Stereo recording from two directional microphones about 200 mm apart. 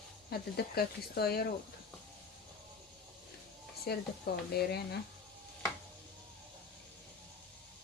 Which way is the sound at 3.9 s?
50° left (ahead or behind).